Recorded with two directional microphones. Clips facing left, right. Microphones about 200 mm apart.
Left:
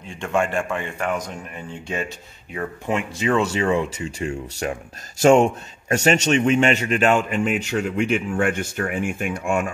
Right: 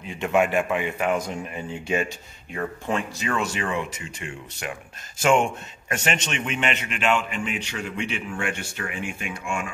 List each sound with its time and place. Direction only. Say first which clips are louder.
0.2 s speech: right 1 dB; 5° right (ahead or behind)
3.2 s a man's voice: left 7 dB; 25° left (ahead or behind); by 9.7 s 50° left (ahead or behind)